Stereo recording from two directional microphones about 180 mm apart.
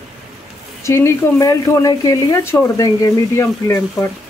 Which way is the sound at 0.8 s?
15° left (ahead or behind).